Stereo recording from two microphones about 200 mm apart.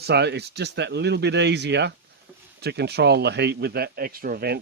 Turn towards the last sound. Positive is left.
turn(degrees=-50)  # may be behind; listen again after turning